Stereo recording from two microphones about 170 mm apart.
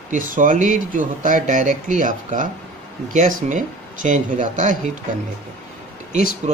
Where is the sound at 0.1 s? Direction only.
55° right (ahead or behind).